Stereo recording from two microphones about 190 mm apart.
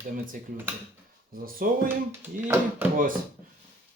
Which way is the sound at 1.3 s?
50° right (ahead or behind).